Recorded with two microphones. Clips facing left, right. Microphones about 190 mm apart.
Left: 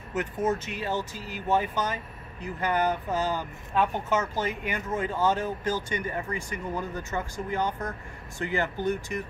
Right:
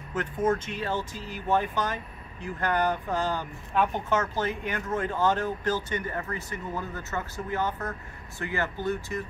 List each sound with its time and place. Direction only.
0.1 s speech: 5° left (ahead or behind)